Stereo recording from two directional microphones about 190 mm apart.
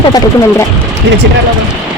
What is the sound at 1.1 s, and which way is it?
Speech, 65° right (ahead or behind).